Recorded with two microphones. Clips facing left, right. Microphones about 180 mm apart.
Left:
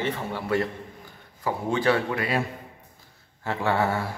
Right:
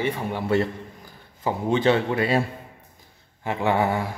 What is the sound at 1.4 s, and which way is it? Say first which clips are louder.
A man's voice: right 3 dB; 20° right (ahead or behind).